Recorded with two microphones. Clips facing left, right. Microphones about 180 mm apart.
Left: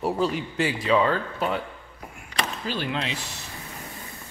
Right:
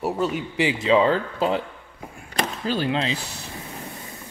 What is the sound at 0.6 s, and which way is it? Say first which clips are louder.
Speech: right 3 dB; 20° right (ahead or behind).